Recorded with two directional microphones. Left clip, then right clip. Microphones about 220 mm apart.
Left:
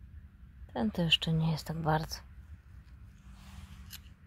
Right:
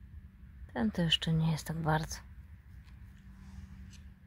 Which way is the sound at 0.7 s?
5° left (ahead or behind).